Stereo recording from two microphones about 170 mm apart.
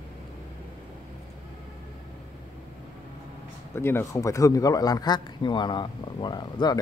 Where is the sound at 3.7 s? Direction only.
15° left (ahead or behind).